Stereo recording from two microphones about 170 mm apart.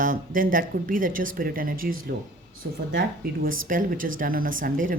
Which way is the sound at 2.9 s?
55° right (ahead or behind).